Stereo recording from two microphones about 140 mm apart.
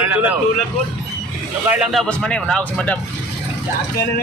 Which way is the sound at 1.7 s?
10° right (ahead or behind).